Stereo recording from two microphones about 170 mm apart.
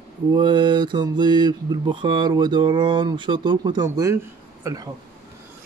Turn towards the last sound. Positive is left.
turn(degrees=-20)  # may be behind; listen again after turning